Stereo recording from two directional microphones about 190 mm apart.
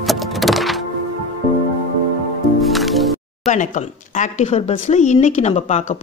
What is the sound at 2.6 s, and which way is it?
Music, centre (ahead or behind).